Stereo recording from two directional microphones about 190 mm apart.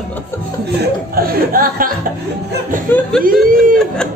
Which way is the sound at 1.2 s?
50° right (ahead or behind).